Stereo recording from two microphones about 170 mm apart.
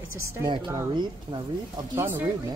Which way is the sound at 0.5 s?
25° right (ahead or behind).